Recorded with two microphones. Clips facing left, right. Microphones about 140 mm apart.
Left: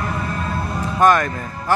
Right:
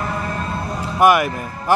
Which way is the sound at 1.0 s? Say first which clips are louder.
Right 1 dB; 10° right (ahead or behind).